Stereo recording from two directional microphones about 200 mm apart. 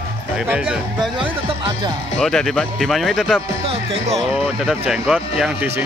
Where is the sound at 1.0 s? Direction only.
20° right (ahead or behind).